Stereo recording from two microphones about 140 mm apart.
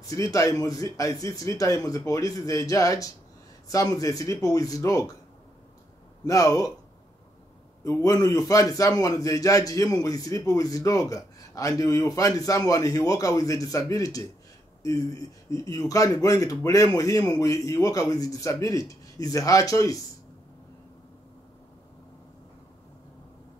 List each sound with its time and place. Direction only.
0.1 s a man's voice: 25° left (ahead or behind)
6.2 s a man's voice: 25° left (ahead or behind)
7.8 s a man's voice: 20° left (ahead or behind)
15.5 s a man's voice: 25° left (ahead or behind)